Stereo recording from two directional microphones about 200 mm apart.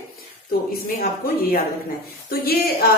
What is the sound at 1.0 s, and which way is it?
A woman's voice, 45° left (ahead or behind).